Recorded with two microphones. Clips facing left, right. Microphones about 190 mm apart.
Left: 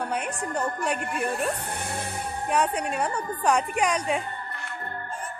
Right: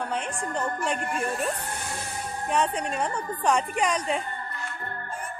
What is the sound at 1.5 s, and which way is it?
Speech, 60° left (ahead or behind).